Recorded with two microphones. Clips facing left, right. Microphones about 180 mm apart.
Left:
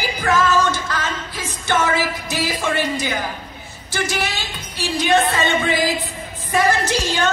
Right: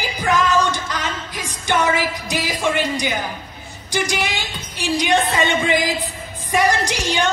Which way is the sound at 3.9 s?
15° right (ahead or behind).